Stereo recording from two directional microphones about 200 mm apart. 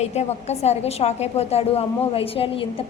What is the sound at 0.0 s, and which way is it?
A woman's voice, 35° left (ahead or behind).